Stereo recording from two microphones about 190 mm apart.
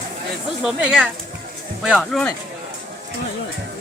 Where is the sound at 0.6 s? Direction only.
5° right (ahead or behind).